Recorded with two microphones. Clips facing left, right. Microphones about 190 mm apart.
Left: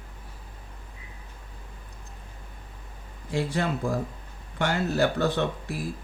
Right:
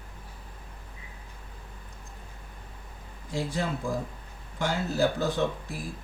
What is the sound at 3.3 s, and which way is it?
Speech, 65° left (ahead or behind).